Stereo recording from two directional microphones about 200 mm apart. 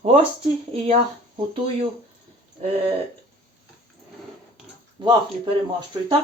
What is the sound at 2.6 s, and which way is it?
Speech, 30° right (ahead or behind).